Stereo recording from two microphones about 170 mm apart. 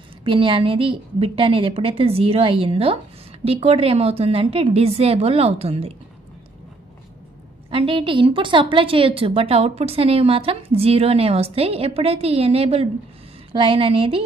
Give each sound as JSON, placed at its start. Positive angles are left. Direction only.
{"t": 0.2, "sound": "a woman's voice", "side_deg": -30}
{"t": 7.7, "sound": "a woman's voice", "side_deg": -30}